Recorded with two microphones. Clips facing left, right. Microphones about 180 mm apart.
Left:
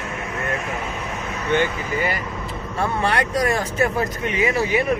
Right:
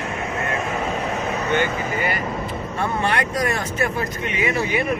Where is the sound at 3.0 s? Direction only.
30° left (ahead or behind).